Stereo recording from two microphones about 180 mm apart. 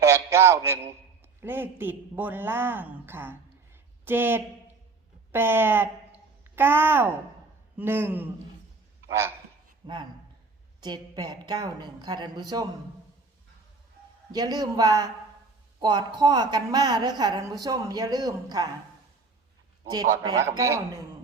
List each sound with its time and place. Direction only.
0.0 s a sound: 15° right (ahead or behind)
1.4 s a woman's voice: 10° right (ahead or behind)
9.8 s a woman's voice: 25° right (ahead or behind)
14.3 s a woman's voice: 20° right (ahead or behind)
19.8 s a man's voice: 25° right (ahead or behind)